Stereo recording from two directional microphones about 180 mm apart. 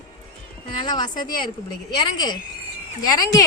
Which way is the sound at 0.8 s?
25° left (ahead or behind).